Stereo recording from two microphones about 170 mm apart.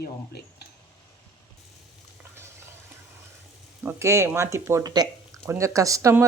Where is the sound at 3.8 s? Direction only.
15° right (ahead or behind).